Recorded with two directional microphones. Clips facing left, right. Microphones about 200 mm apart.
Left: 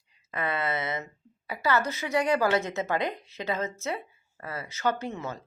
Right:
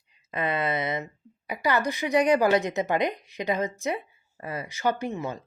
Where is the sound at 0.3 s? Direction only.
20° right (ahead or behind).